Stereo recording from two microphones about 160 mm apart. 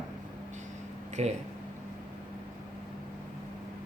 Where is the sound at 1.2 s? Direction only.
40° right (ahead or behind).